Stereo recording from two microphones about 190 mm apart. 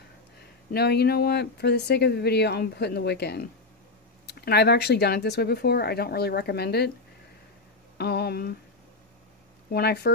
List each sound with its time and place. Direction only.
0.7 s speech: 60° left (ahead or behind)
8.0 s speech: 60° left (ahead or behind)
9.7 s speech: 55° left (ahead or behind)